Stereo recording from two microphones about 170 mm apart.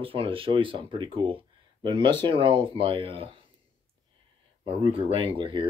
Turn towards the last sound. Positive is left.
turn(degrees=-30)  # may be behind; listen again after turning